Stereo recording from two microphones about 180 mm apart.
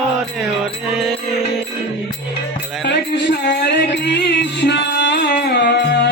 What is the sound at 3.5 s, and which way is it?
Music, 70° left (ahead or behind).